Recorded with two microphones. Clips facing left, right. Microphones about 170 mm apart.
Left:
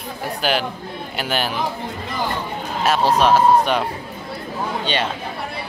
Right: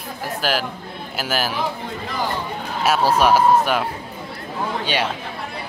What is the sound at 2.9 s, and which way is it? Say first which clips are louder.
Speech: even; 5° right (ahead or behind).